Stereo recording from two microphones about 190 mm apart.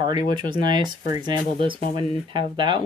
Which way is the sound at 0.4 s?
25° right (ahead or behind).